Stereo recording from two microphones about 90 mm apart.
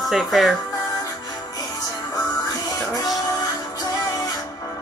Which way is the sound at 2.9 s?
45° left (ahead or behind).